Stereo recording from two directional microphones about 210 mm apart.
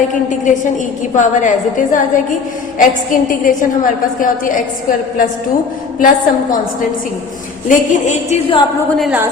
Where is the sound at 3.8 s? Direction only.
40° left (ahead or behind).